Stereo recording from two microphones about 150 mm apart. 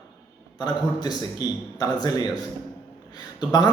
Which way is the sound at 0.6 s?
30° left (ahead or behind).